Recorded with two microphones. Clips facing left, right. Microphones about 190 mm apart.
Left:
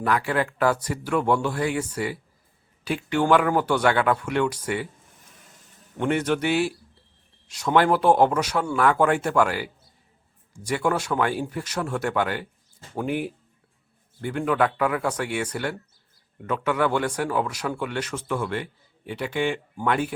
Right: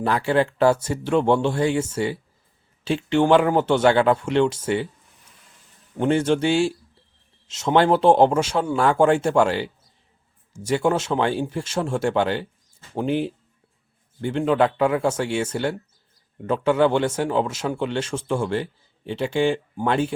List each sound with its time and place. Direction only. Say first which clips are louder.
0.0 s a man's voice: right 4 dB; 30° right (ahead or behind)
6.0 s a man's voice: right 4 dB; 30° right (ahead or behind)